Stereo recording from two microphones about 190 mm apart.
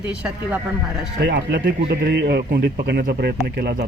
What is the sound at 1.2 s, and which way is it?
A man's voice, 60° right (ahead or behind).